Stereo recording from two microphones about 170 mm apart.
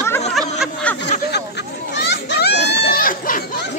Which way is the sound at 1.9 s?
90° left.